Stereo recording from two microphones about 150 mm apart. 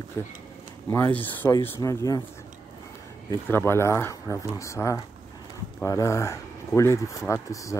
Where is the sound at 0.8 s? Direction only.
20° left (ahead or behind).